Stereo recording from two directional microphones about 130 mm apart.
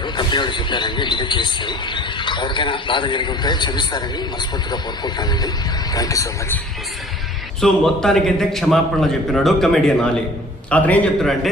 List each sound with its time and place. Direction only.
0.0 s speech: 35° left (ahead or behind)
7.6 s a man's voice: 5° left (ahead or behind)